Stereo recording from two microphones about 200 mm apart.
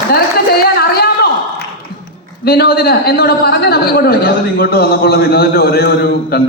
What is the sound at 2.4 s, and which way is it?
A man's voice, 50° left (ahead or behind).